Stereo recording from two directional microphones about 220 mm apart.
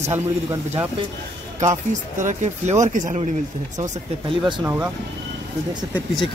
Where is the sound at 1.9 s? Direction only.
35° right (ahead or behind).